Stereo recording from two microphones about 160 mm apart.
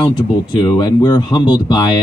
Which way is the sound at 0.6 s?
25° left (ahead or behind).